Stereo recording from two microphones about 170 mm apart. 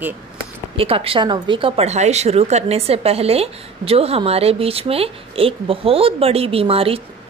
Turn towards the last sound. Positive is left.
turn(degrees=-35)  # may be behind; listen again after turning